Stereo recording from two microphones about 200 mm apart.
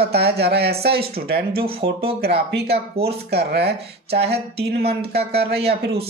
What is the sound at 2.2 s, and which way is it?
Speech, 55° right (ahead or behind).